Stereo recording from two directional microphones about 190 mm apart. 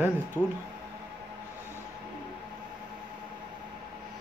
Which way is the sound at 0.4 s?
10° left (ahead or behind).